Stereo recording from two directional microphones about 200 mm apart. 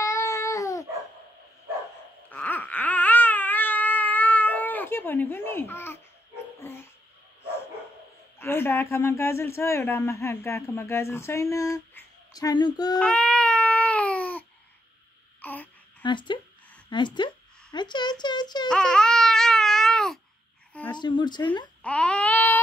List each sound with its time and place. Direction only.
0.0 s babbling: 15° left (ahead or behind)
2.3 s baby cry: 10° left (ahead or behind)
8.4 s speech: 10° left (ahead or behind)
13.0 s baby cry: 5° left (ahead or behind)
15.4 s a sound: 10° left (ahead or behind)
16.0 s a sound: 25° left (ahead or behind)
16.9 s speech: 25° left (ahead or behind)
18.7 s baby cry: 5° left (ahead or behind)
20.9 s speech: 20° left (ahead or behind)
21.8 s baby cry: 5° left (ahead or behind)